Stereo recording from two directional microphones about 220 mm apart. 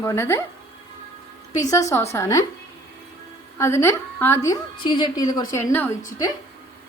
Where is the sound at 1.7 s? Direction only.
15° left (ahead or behind).